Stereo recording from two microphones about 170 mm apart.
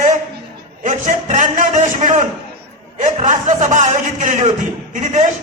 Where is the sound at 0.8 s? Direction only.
50° right (ahead or behind).